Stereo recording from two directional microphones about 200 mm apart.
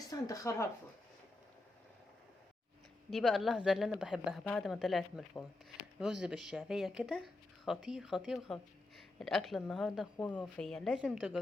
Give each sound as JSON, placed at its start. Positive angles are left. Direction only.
{"t": 0.1, "sound": "speech", "side_deg": 15}
{"t": 3.1, "sound": "speech", "side_deg": 0}